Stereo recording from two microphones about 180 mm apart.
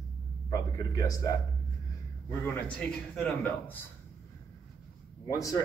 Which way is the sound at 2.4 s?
10° left (ahead or behind).